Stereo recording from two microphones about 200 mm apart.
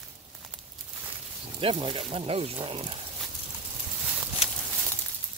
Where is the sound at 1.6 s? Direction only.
25° right (ahead or behind).